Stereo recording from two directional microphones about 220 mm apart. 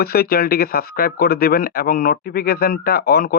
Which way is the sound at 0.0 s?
45° left (ahead or behind).